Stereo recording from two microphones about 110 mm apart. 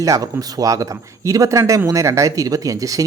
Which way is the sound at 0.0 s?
30° right (ahead or behind).